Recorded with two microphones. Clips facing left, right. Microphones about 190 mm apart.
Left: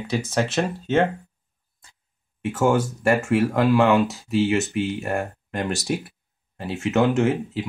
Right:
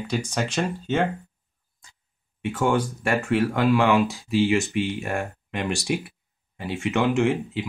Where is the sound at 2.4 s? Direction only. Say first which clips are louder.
Left 2 dB; 5° left (ahead or behind).